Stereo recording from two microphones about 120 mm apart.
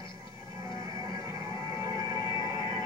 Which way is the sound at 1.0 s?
30° right (ahead or behind).